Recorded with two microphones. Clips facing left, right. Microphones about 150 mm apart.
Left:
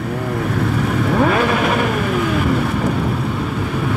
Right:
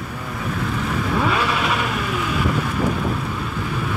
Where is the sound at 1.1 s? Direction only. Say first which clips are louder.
Left 5 dB; 50° left (ahead or behind).